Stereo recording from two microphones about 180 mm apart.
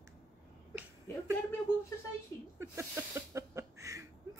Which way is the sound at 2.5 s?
15° right (ahead or behind).